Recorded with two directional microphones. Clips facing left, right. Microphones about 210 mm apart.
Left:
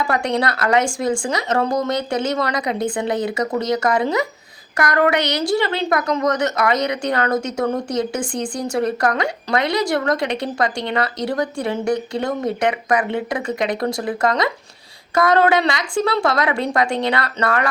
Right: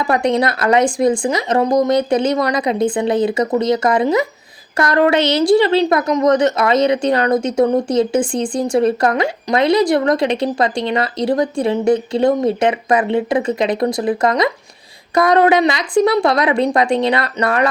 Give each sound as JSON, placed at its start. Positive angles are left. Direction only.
{"t": 0.0, "sound": "speech", "side_deg": -20}